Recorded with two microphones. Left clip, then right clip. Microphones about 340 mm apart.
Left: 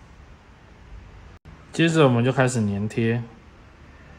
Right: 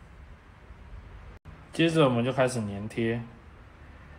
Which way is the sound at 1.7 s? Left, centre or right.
Left.